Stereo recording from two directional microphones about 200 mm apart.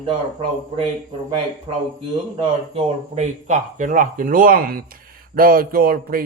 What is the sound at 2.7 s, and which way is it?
Speech, 35° right (ahead or behind).